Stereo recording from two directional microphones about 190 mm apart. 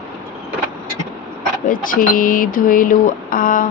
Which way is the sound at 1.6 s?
45° left (ahead or behind).